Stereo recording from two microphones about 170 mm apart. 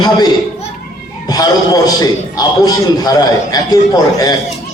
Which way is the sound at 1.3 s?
20° left (ahead or behind).